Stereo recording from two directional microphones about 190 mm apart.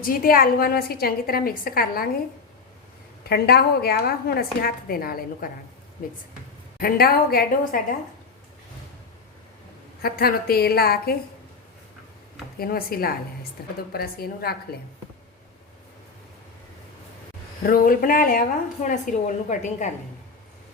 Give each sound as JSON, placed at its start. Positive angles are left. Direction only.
{"t": 0.0, "sound": "a woman's voice", "side_deg": 50}
{"t": 3.2, "sound": "a woman's voice", "side_deg": 55}
{"t": 6.7, "sound": "a woman's voice", "side_deg": 55}
{"t": 10.0, "sound": "a woman's voice", "side_deg": 50}
{"t": 12.5, "sound": "a woman's voice", "side_deg": 50}
{"t": 17.6, "sound": "a woman's voice", "side_deg": 50}